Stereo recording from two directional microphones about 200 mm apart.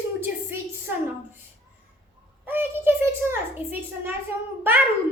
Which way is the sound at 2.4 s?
10° right (ahead or behind).